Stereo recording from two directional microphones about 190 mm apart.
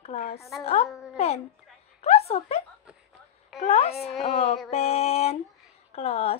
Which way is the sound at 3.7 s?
30° left (ahead or behind).